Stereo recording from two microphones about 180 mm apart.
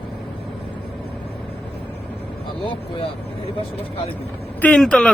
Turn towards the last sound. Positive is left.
turn(degrees=5)  # may be behind; listen again after turning